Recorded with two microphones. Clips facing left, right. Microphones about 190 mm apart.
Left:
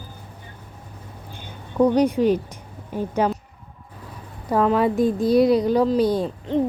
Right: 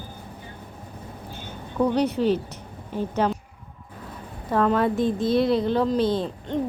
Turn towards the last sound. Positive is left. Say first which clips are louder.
# left 4 dB
turn(degrees=0)  # may be behind; listen again after turning